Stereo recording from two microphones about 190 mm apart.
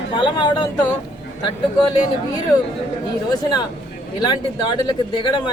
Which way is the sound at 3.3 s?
20° left (ahead or behind).